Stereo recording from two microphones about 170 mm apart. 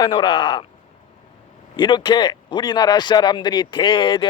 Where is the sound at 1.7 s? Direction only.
25° left (ahead or behind).